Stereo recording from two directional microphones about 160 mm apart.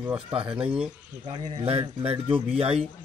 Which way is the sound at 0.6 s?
5° right (ahead or behind).